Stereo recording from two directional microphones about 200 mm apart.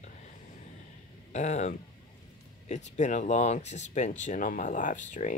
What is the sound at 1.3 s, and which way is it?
Speech, 35° left (ahead or behind).